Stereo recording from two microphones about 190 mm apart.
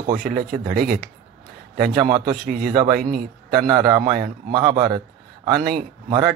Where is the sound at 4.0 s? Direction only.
50° right (ahead or behind).